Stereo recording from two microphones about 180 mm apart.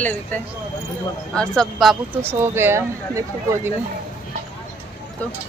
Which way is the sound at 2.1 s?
15° right (ahead or behind).